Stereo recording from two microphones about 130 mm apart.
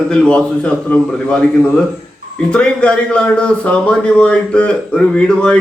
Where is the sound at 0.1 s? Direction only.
5° left (ahead or behind).